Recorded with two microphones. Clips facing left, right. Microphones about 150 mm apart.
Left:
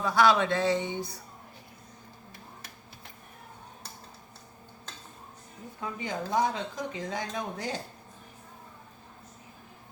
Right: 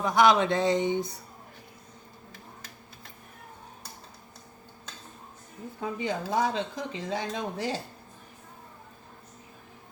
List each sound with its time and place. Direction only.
0.0 s speech: 20° right (ahead or behind)
5.8 s speech: 25° right (ahead or behind)